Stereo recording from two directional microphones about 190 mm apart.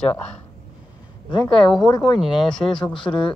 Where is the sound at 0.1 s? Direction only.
5° left (ahead or behind).